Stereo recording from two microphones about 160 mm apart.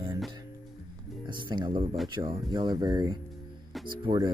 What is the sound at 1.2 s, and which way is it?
Speech, 30° right (ahead or behind).